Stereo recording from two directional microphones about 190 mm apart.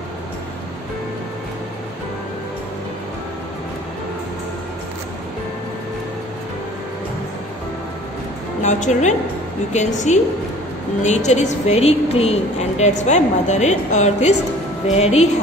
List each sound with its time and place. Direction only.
8.6 s a woman's voice: 40° left (ahead or behind)